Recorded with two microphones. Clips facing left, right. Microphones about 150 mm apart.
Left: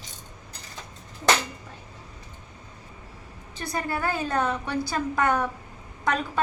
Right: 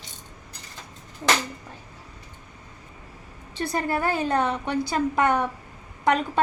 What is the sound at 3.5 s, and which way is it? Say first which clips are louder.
A woman's voice: right 4 dB; 30° right (ahead or behind).